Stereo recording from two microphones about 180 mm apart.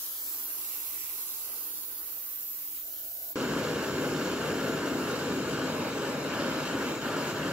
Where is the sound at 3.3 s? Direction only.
5° right (ahead or behind).